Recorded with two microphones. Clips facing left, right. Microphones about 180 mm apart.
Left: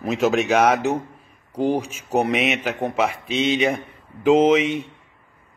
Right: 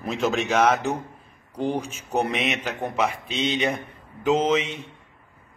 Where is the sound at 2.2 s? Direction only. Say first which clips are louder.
Left 5 dB; 10° left (ahead or behind).